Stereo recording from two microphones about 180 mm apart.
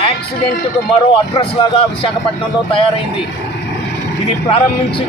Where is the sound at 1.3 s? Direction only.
30° left (ahead or behind).